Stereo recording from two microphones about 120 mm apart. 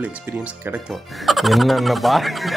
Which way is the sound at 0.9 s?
Centre (ahead or behind).